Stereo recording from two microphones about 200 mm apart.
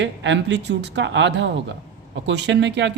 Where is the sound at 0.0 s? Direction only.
65° right (ahead or behind).